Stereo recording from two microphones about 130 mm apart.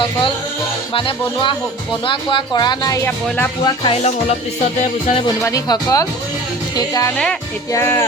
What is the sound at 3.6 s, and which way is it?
Speech, 40° left (ahead or behind).